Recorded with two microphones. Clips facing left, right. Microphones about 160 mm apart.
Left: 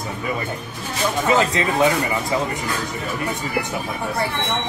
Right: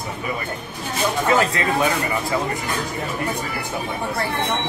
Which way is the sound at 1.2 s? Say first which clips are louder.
Left 1 dB; 25° left (ahead or behind).